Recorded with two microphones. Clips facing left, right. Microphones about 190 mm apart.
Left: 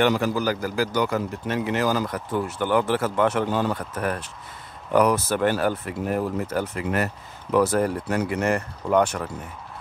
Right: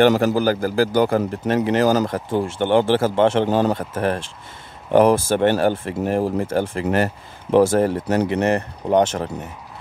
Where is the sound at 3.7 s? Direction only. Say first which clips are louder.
Right 5 dB; 25° right (ahead or behind).